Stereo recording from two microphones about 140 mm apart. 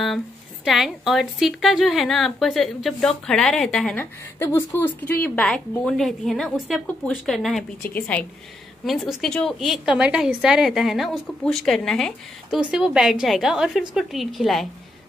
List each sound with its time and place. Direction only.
0.7 s a woman's voice: centre (ahead or behind)
3.9 s a woman's voice: 15° left (ahead or behind)
8.8 s a woman's voice: centre (ahead or behind)